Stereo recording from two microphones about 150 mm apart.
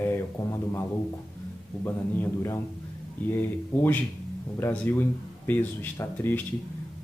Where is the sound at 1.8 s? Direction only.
15° left (ahead or behind).